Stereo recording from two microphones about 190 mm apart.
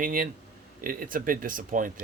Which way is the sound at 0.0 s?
50° right (ahead or behind).